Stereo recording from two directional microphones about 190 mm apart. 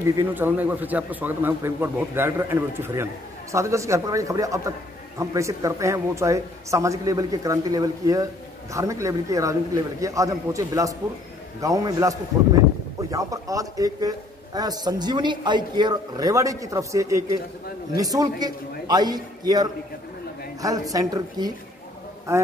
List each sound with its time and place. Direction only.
0.2 s a man's voice: 10° right (ahead or behind)